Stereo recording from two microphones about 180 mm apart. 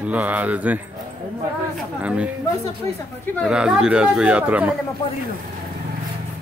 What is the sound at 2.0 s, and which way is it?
Speech, 5° right (ahead or behind).